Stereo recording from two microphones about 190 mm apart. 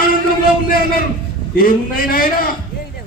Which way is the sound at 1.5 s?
50° left (ahead or behind).